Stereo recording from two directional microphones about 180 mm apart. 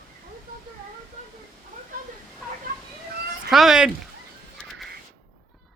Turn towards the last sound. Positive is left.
turn(degrees=-5)  # may be behind; listen again after turning